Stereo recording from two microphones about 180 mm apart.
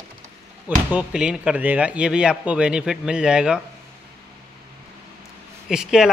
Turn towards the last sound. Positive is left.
turn(degrees=-5)  # may be behind; listen again after turning